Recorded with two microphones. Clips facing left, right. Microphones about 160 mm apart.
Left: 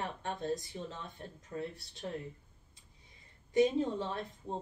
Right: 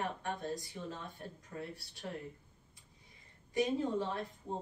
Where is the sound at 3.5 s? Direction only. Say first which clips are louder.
Left 4 dB; 25° left (ahead or behind).